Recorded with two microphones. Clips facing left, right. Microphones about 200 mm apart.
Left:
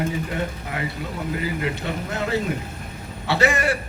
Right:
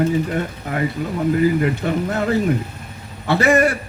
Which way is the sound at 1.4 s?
50° right (ahead or behind).